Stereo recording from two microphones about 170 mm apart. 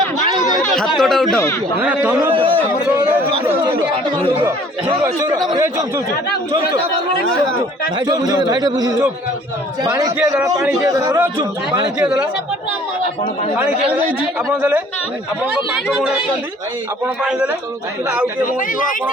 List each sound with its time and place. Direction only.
0.8 s a sound: centre (ahead or behind)
1.8 s a man's voice: 10° right (ahead or behind)
5.0 s speech: 20° right (ahead or behind)
6.5 s a man's voice: 35° right (ahead or behind)
7.9 s speech: 25° right (ahead or behind)
11.9 s speech: 5° right (ahead or behind)
14.5 s a man's voice: 15° right (ahead or behind)
15.7 s speech: centre (ahead or behind)